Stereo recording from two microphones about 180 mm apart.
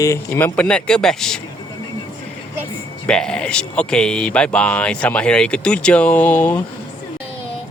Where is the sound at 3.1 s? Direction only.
5° left (ahead or behind).